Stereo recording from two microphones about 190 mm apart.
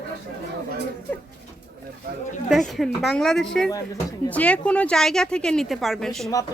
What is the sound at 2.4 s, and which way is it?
A woman's voice, centre (ahead or behind).